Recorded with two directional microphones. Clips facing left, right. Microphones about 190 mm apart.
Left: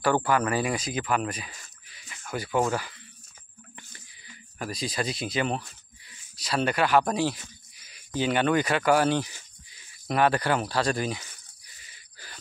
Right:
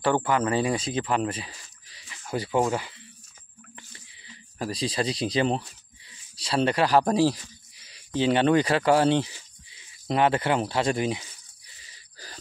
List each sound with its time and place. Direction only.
0.0 s speech: 20° right (ahead or behind)
11.6 s wheeze: 30° right (ahead or behind)